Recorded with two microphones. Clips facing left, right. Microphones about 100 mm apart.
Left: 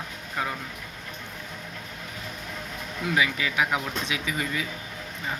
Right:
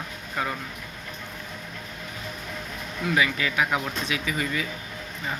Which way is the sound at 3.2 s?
15° left (ahead or behind).